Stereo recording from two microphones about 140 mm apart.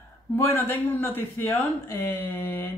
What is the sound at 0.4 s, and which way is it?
Speech, 15° left (ahead or behind).